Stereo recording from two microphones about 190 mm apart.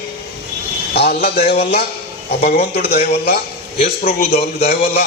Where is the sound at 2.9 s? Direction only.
55° left (ahead or behind).